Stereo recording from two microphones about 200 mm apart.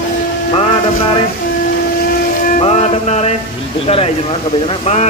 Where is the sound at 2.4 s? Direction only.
35° left (ahead or behind).